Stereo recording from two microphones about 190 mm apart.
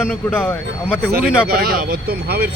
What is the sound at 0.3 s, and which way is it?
Speech, 10° left (ahead or behind).